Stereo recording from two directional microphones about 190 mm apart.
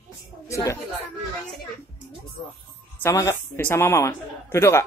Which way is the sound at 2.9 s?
15° left (ahead or behind).